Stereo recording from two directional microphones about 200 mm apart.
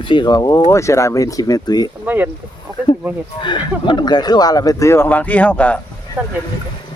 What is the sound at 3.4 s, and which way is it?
Speech, 25° left (ahead or behind).